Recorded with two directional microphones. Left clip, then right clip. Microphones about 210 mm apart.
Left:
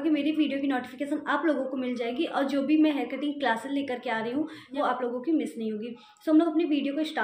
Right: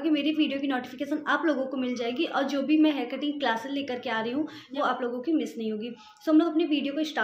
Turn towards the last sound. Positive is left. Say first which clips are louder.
# even
turn(degrees=0)  # may be behind; listen again after turning